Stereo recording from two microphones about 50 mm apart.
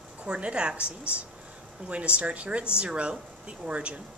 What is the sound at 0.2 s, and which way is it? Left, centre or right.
Speech, right.